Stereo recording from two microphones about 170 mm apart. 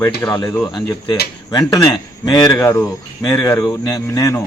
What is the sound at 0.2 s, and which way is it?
Speech, 15° left (ahead or behind).